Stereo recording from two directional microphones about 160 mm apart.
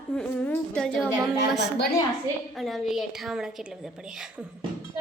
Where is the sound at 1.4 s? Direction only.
90° left.